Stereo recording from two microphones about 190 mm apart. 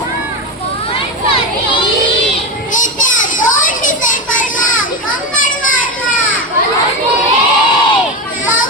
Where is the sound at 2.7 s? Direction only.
40° left (ahead or behind).